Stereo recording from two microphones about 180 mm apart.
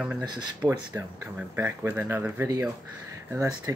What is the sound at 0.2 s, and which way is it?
Speech, 25° right (ahead or behind).